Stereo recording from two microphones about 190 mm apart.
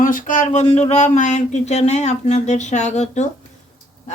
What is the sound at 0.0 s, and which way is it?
Speech, 45° left (ahead or behind).